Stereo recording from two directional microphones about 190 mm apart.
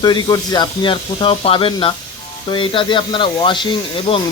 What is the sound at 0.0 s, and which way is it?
Speech, 20° left (ahead or behind).